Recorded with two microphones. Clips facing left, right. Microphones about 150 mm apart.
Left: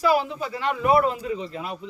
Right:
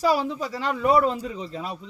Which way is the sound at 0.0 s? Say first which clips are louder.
Left 1 dB; 35° right (ahead or behind).